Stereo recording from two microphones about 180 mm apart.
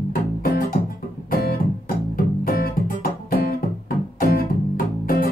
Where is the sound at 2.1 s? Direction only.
55° left (ahead or behind).